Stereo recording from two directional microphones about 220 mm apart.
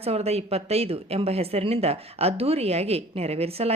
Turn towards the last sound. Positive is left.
turn(degrees=-25)  # may be behind; listen again after turning